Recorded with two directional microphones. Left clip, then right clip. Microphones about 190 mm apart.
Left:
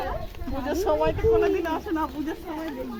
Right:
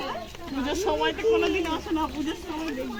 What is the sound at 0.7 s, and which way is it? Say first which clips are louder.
Speech: left 2 dB; centre (ahead or behind).